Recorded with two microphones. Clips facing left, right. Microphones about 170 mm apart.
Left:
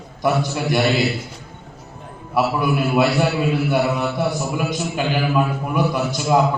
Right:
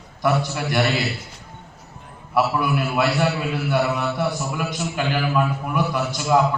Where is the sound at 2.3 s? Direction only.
15° left (ahead or behind).